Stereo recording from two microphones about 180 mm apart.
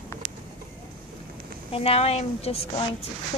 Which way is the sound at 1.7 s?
35° left (ahead or behind).